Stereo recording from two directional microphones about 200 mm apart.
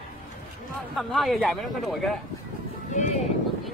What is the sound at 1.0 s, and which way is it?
Speech, centre (ahead or behind).